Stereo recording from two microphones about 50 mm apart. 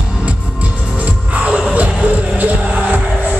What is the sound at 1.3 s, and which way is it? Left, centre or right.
Music, right.